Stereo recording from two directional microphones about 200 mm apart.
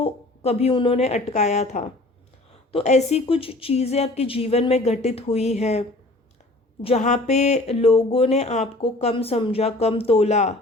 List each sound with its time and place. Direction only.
0.0 s a woman's voice: 30° left (ahead or behind)
6.8 s speech: 35° left (ahead or behind)